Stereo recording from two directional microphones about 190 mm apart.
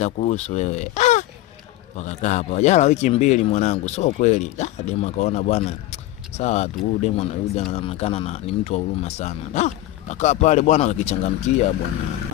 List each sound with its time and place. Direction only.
0.0 s speech: 40° left (ahead or behind)